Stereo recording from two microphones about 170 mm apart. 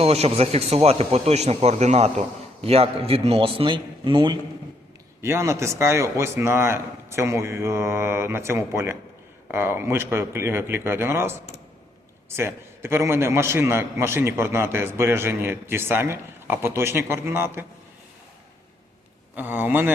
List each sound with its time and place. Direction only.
0.0 s speech: 35° right (ahead or behind)
5.2 s a man's voice: 15° right (ahead or behind)
12.4 s a man's voice: 15° right (ahead or behind)
19.4 s a man's voice: 10° right (ahead or behind)